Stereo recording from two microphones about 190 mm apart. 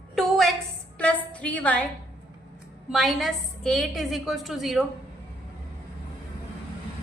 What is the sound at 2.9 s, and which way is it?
A woman's voice, centre (ahead or behind).